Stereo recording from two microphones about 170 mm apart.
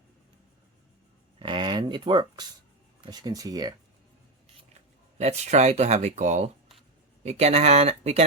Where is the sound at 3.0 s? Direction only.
25° right (ahead or behind).